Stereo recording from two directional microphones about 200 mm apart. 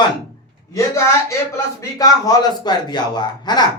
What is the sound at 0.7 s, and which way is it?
Speech, 15° left (ahead or behind).